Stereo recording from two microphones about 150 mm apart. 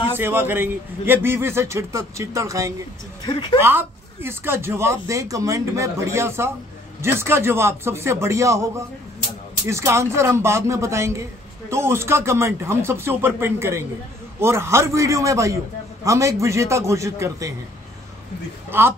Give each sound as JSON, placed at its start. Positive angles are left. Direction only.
{"t": 0.1, "sound": "speech", "side_deg": -15}
{"t": 3.3, "sound": "speech", "side_deg": 30}
{"t": 3.5, "sound": "a man's voice", "side_deg": -15}
{"t": 18.7, "sound": "a man's voice", "side_deg": -15}